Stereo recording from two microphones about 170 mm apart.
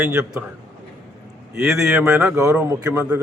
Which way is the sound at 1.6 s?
Centre (ahead or behind).